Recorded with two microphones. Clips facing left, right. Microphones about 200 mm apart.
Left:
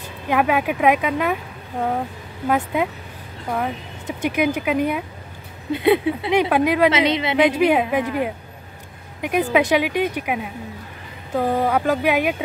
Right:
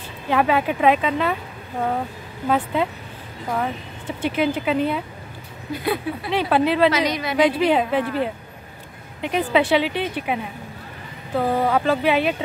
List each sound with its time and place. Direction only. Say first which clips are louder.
0.3 s a woman's voice: even; 10° left (ahead or behind)
5.7 s speech: left 7 dB; 25° left (ahead or behind)
6.9 s speech: left 3 dB; 25° left (ahead or behind)
7.5 s speech: left 1 dB; 10° left (ahead or behind)